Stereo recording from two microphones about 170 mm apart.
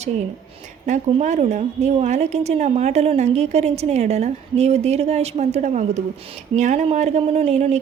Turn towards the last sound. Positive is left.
turn(degrees=-40)  # may be behind; listen again after turning